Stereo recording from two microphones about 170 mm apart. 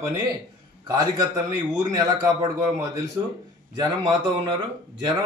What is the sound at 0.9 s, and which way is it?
Speech, 20° right (ahead or behind).